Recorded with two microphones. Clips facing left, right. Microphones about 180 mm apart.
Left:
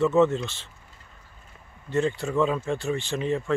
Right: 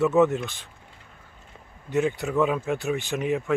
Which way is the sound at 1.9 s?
Centre (ahead or behind).